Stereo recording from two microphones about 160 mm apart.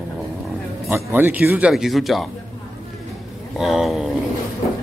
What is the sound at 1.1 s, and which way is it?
Speech, 10° right (ahead or behind).